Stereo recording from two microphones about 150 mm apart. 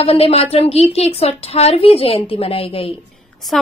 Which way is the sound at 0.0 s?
40° left (ahead or behind).